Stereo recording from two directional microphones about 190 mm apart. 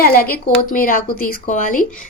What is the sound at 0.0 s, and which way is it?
A woman's voice, 50° left (ahead or behind).